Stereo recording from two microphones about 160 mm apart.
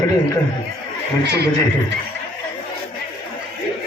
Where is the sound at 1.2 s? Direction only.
90° right.